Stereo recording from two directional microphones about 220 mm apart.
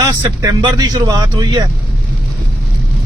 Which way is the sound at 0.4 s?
15° right (ahead or behind).